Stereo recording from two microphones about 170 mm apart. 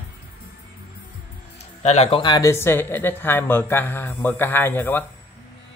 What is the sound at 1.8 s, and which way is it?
Speech, 40° left (ahead or behind).